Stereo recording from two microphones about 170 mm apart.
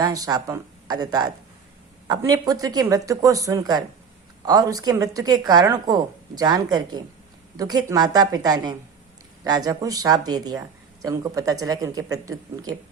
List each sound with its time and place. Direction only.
0.0 s a woman's voice: 20° right (ahead or behind)